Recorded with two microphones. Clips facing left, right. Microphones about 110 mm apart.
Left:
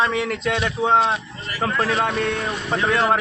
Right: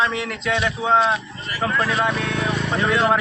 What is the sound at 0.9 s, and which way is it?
Speech, 25° left (ahead or behind).